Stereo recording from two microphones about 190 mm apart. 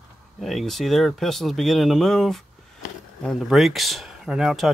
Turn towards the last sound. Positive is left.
turn(degrees=0)  # may be behind; listen again after turning